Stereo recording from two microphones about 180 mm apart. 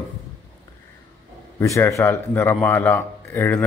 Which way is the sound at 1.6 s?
15° left (ahead or behind).